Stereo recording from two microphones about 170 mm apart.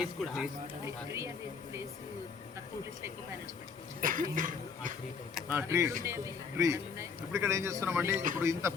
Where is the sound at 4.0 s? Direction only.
55° right (ahead or behind).